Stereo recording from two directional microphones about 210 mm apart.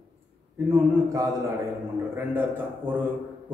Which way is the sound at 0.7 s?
15° right (ahead or behind).